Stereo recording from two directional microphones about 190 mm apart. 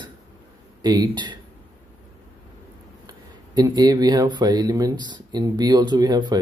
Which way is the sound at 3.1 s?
20° right (ahead or behind).